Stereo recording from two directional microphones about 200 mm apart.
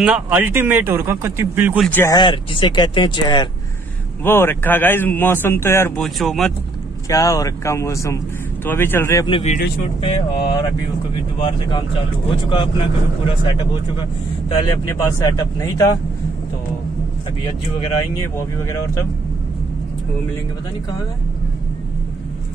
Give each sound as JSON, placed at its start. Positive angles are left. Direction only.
{"t": 0.0, "sound": "speech", "side_deg": -10}
{"t": 1.8, "sound": "a man's voice", "side_deg": 10}
{"t": 2.1, "sound": "speech", "side_deg": 25}
{"t": 4.2, "sound": "a man's voice", "side_deg": 10}
{"t": 5.9, "sound": "speech", "side_deg": 0}
{"t": 7.1, "sound": "a man's voice", "side_deg": 15}
{"t": 9.3, "sound": "speech", "side_deg": 30}
{"t": 10.0, "sound": "speech", "side_deg": 20}
{"t": 12.4, "sound": "a man's voice", "side_deg": 25}
{"t": 18.6, "sound": "a man's voice", "side_deg": 15}